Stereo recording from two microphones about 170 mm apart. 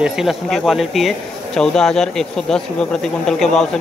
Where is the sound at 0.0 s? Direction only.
Centre (ahead or behind).